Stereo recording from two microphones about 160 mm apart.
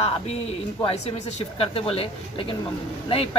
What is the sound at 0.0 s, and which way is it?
A woman's voice, 40° left (ahead or behind).